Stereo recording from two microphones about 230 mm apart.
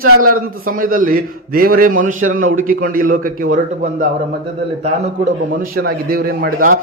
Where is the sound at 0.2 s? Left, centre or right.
Right.